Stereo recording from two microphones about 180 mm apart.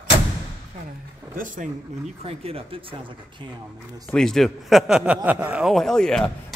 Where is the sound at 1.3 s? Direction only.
45° right (ahead or behind).